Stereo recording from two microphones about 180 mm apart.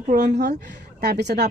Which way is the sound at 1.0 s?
70° right (ahead or behind).